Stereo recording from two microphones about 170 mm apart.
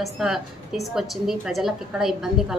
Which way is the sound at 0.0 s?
Centre (ahead or behind).